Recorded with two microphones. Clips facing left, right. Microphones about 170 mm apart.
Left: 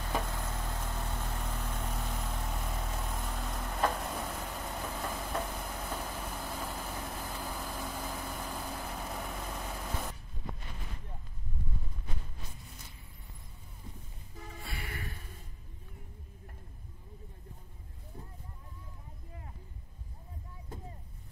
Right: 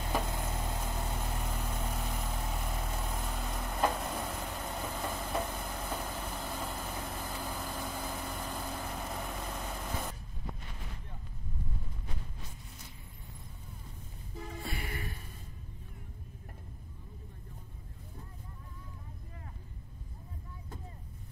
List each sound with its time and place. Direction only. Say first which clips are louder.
0.2 s vehicle: right 2 dB; 20° right (ahead or behind); by 10.1 s centre (ahead or behind)
14.7 s music: right 1 dB; 20° right (ahead or behind)